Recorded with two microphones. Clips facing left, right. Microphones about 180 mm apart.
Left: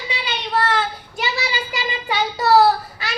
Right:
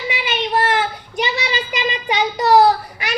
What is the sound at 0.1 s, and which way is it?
Child singing, 20° right (ahead or behind).